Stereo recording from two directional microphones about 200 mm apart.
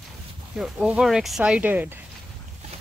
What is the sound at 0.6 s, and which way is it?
Speech, 5° right (ahead or behind).